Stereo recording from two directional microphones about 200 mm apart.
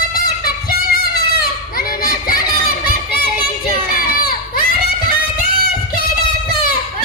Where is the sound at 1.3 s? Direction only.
45° left (ahead or behind).